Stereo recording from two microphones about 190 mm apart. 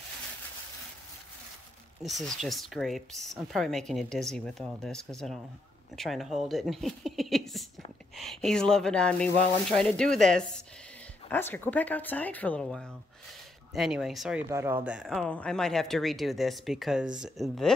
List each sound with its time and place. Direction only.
2.0 s speech: centre (ahead or behind)
14.5 s speech: 10° right (ahead or behind)